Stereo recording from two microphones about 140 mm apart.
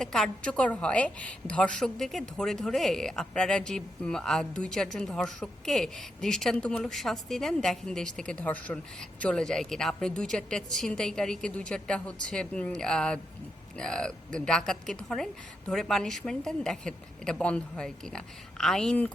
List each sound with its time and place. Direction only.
0.0 s a woman's voice: 5° left (ahead or behind)